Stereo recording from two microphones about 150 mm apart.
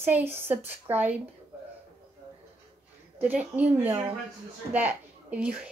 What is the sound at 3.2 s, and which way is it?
A woman's voice, 10° right (ahead or behind).